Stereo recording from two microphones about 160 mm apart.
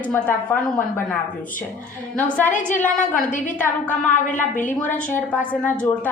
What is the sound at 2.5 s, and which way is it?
Speech, 55° left (ahead or behind).